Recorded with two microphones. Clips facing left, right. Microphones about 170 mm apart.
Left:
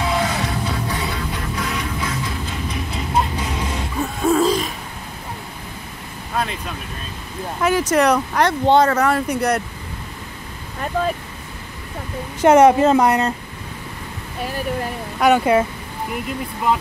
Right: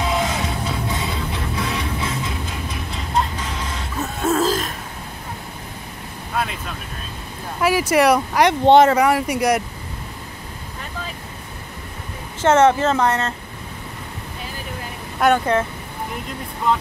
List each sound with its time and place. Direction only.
0.1 s music: 20° right (ahead or behind)
3.2 s music: 10° left (ahead or behind)
3.9 s a sound: centre (ahead or behind)
6.3 s vehicle: 5° right (ahead or behind)
7.6 s speech: 10° right (ahead or behind)
8.6 s speech: 20° right (ahead or behind)
9.0 s speech: 10° right (ahead or behind)
12.4 s speech: 15° left (ahead or behind)
15.1 s speech: 5° left (ahead or behind)